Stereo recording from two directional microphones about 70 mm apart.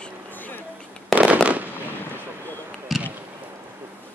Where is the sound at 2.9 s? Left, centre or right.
Centre.